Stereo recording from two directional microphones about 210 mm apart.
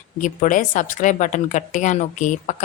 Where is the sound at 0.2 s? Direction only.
35° left (ahead or behind).